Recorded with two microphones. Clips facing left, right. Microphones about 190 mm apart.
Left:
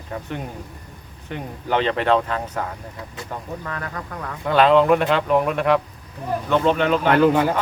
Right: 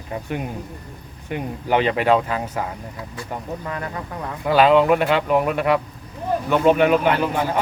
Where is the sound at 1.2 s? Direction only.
10° right (ahead or behind).